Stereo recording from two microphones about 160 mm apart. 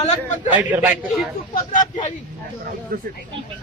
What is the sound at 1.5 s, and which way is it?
Speech, 55° left (ahead or behind).